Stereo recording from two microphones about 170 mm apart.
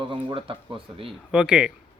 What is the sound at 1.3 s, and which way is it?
Speech, 5° right (ahead or behind).